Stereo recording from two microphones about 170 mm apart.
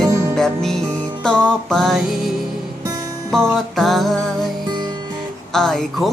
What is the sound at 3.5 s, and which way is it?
Music, centre (ahead or behind).